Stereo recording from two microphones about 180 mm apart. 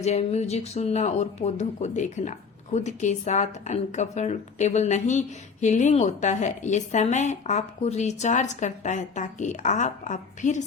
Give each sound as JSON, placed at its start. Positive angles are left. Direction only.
{"t": 0.0, "sound": "speech", "side_deg": 35}